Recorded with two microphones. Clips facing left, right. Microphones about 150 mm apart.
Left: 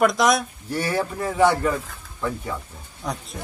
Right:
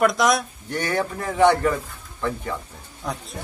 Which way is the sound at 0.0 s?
Centre (ahead or behind).